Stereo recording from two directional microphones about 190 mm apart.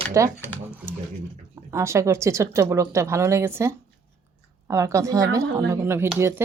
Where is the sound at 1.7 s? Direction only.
15° right (ahead or behind).